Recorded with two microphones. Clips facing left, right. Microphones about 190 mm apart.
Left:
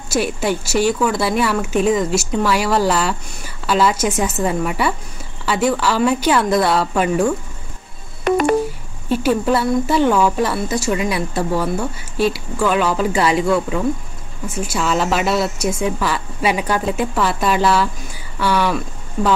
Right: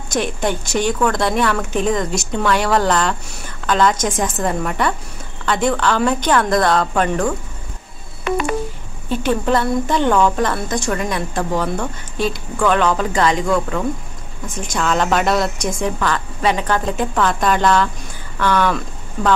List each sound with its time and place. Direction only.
0.1 s a woman's voice: 5° left (ahead or behind)
8.2 s music: 45° left (ahead or behind)
9.1 s a woman's voice: 5° left (ahead or behind)